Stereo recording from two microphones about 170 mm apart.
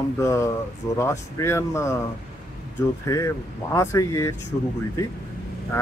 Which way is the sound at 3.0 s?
20° left (ahead or behind).